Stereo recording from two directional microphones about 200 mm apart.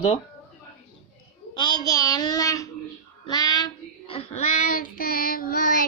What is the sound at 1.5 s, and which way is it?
Child singing, 20° left (ahead or behind).